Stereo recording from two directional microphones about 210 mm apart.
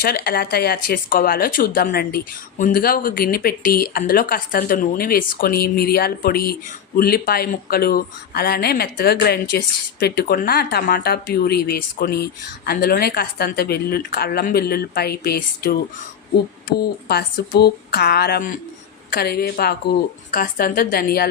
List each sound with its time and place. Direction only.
0.0 s speech: 45° left (ahead or behind)
17.1 s speech: 50° left (ahead or behind)